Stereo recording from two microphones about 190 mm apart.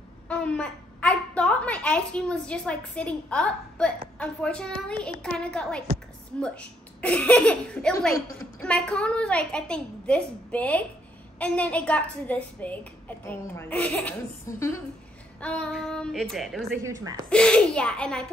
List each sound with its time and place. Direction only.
0.3 s a woman's voice: 5° left (ahead or behind)
16.8 s speech: 20° right (ahead or behind)
17.3 s a woman's voice: 5° left (ahead or behind)